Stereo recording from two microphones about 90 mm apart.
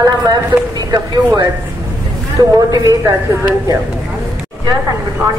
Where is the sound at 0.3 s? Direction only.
40° right (ahead or behind).